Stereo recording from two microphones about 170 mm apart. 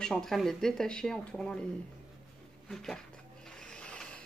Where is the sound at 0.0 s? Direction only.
5° left (ahead or behind).